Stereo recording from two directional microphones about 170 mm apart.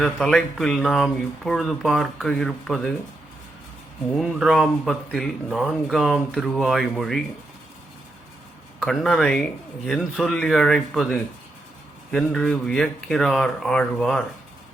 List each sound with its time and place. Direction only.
0.0 s speech: 5° left (ahead or behind)
4.2 s speech: centre (ahead or behind)
8.8 s speech: centre (ahead or behind)